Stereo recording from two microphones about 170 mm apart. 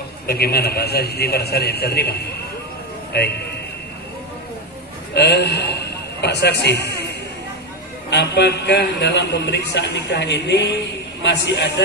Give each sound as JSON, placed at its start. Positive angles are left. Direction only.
{"t": 0.3, "sound": "a man's voice", "side_deg": 65}
{"t": 5.1, "sound": "a man's voice", "side_deg": 80}